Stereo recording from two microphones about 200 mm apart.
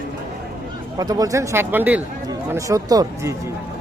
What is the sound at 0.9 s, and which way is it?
Speech, 20° right (ahead or behind).